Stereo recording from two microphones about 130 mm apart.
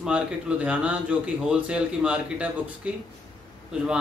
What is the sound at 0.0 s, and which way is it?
Speech, 10° right (ahead or behind).